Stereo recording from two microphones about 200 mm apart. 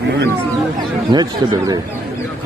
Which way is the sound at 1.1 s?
20° right (ahead or behind).